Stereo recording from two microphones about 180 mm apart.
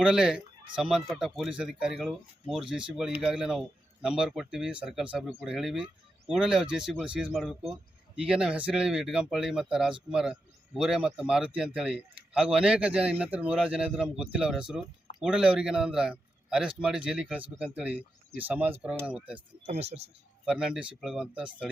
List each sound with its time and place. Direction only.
0.0 s speech: 5° right (ahead or behind)
19.6 s speech: 35° right (ahead or behind)
20.4 s speech: 5° right (ahead or behind)